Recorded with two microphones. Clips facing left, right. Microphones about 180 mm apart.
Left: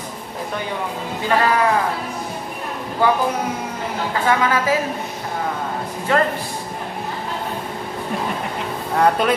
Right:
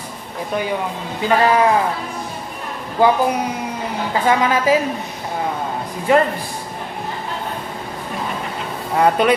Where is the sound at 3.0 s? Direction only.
15° right (ahead or behind).